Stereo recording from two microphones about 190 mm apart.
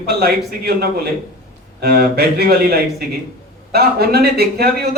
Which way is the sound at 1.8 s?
55° right (ahead or behind).